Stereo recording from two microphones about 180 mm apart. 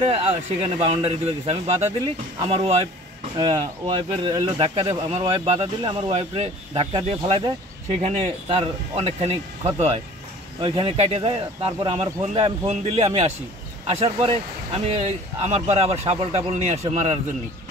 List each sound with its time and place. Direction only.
0.0 s speech: 35° right (ahead or behind)